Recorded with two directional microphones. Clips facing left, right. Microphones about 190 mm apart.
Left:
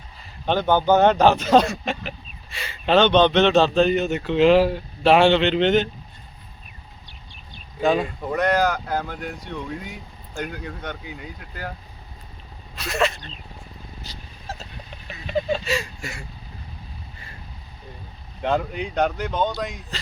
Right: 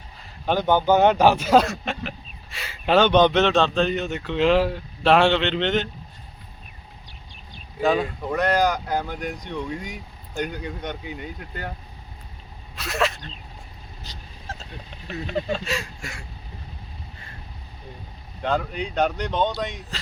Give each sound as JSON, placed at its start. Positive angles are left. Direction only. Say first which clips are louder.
{"t": 0.4, "sound": "speech", "louder": "left 1 dB", "side_deg": -10}
{"t": 3.4, "sound": "speech", "louder": "left 3 dB", "side_deg": 5}
{"t": 7.8, "sound": "speech", "louder": "left 1 dB", "side_deg": 0}
{"t": 8.4, "sound": "speech", "louder": "even", "side_deg": -10}
{"t": 12.7, "sound": "speech", "louder": "left 1 dB", "side_deg": 0}
{"t": 14.1, "sound": "a sound", "louder": "left 1 dB", "side_deg": 5}
{"t": 18.4, "sound": "speech", "louder": "left 2 dB", "side_deg": 15}